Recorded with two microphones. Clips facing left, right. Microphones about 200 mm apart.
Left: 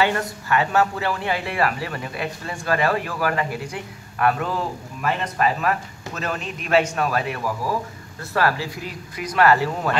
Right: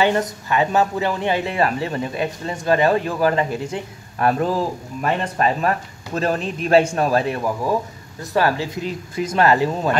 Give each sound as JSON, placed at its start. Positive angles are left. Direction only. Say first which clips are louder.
{"t": 0.0, "sound": "speech", "louder": "right 3 dB", "side_deg": -20}
{"t": 8.2, "sound": "speech", "louder": "right 3 dB", "side_deg": -15}